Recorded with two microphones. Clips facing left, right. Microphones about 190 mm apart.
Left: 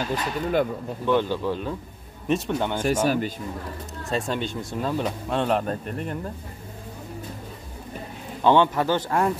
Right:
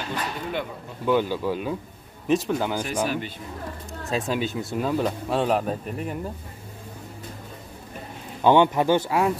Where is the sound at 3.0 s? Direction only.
40° left (ahead or behind).